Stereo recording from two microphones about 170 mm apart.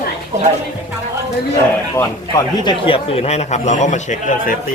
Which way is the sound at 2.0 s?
25° left (ahead or behind).